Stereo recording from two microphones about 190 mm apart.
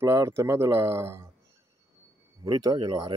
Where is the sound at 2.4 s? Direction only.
20° right (ahead or behind).